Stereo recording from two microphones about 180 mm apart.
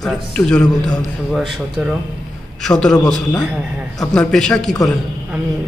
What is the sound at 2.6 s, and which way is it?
Speech, 5° left (ahead or behind).